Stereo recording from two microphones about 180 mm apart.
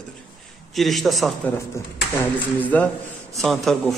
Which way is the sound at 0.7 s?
Centre (ahead or behind).